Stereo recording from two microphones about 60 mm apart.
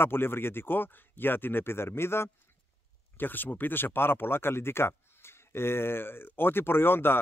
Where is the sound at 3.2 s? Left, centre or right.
Left.